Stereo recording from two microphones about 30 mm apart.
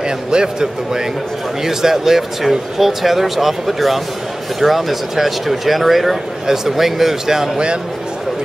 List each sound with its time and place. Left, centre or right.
0.3 s a man's voice: right
1.6 s speech: centre
6.4 s speech: centre
7.5 s a man's voice: right